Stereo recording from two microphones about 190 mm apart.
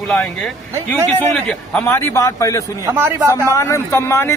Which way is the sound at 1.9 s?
15° left (ahead or behind).